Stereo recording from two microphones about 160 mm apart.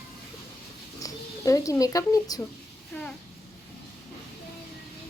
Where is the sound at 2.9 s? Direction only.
10° left (ahead or behind).